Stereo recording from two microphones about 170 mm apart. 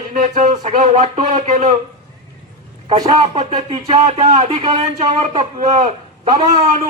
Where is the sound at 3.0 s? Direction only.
30° right (ahead or behind).